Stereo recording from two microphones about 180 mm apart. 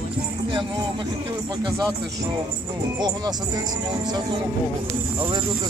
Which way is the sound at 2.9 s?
20° right (ahead or behind).